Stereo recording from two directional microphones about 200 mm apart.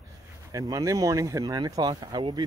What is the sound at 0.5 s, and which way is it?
Speech, 15° right (ahead or behind).